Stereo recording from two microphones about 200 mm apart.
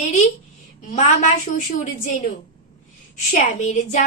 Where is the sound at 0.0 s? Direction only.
35° left (ahead or behind).